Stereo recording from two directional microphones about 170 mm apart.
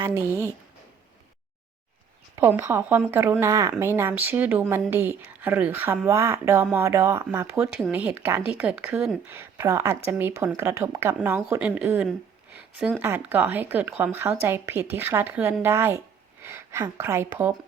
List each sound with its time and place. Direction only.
0.0 s speech: 15° right (ahead or behind)
2.3 s speech: 15° right (ahead or behind)